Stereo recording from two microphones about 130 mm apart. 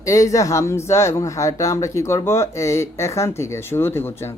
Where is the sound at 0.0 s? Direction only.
25° left (ahead or behind).